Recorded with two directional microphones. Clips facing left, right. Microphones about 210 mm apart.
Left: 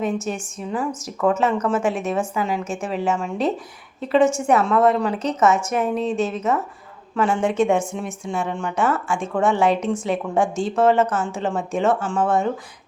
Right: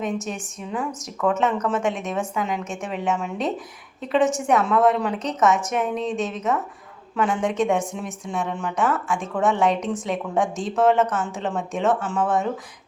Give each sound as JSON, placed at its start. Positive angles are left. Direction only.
{"t": 0.3, "sound": "speech", "side_deg": 0}
{"t": 10.4, "sound": "speech", "side_deg": 30}
{"t": 10.8, "sound": "speech", "side_deg": 0}